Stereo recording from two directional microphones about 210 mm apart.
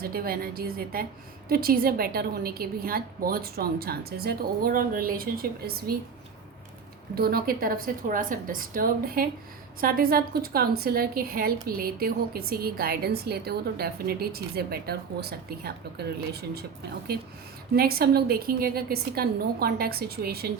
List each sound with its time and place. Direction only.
0.0 s a woman's voice: 45° right (ahead or behind)
7.2 s a woman's voice: 45° right (ahead or behind)
17.7 s a woman's voice: 45° right (ahead or behind)